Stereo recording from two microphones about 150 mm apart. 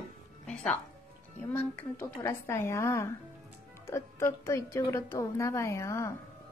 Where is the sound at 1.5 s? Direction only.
15° left (ahead or behind).